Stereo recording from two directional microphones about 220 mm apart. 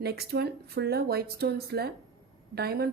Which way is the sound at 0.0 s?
45° right (ahead or behind).